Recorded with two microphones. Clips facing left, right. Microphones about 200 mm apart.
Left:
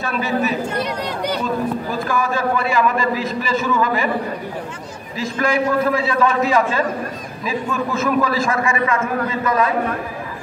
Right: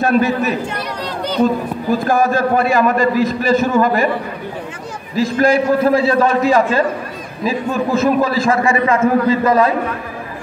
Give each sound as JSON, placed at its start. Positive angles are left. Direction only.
{"t": 0.0, "sound": "a man's voice", "side_deg": -45}
{"t": 2.0, "sound": "a man's voice", "side_deg": -45}
{"t": 5.1, "sound": "a man's voice", "side_deg": -35}